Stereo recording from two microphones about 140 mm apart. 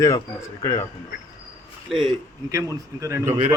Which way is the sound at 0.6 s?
25° left (ahead or behind).